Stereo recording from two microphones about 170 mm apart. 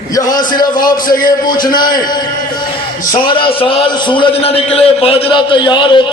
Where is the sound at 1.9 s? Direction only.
25° left (ahead or behind).